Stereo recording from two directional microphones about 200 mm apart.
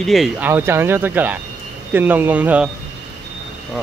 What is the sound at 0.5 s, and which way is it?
Speech, 10° right (ahead or behind).